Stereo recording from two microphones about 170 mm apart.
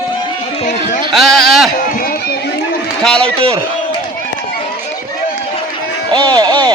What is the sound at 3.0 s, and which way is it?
Speech, 5° left (ahead or behind).